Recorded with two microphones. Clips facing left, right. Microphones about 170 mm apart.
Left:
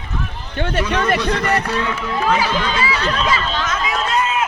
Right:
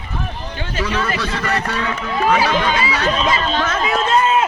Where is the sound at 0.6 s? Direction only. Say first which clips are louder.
Left 7 dB; 65° left (ahead or behind).